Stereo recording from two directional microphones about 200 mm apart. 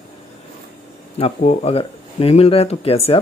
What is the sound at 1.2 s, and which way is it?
Speech, 30° left (ahead or behind).